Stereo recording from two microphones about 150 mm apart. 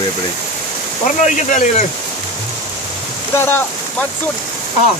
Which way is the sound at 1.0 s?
55° left (ahead or behind).